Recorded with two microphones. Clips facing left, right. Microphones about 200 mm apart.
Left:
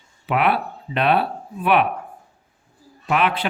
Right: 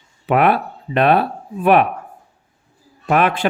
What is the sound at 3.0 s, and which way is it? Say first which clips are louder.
Speech: right 4 dB; 45° right (ahead or behind).